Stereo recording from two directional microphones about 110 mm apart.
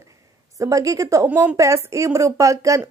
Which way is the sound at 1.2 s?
15° right (ahead or behind).